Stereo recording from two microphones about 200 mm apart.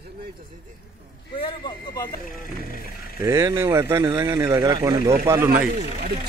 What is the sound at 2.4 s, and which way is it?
Speech, 45° left (ahead or behind).